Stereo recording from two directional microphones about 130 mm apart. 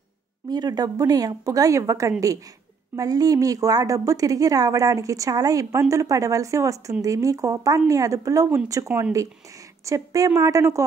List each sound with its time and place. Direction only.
0.5 s a woman's voice: 30° right (ahead or behind)